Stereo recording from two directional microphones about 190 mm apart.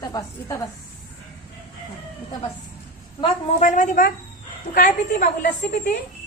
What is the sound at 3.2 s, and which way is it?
A woman's voice, 35° left (ahead or behind).